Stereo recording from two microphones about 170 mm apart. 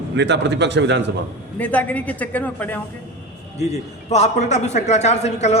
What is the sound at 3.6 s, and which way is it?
A man's voice, 40° left (ahead or behind).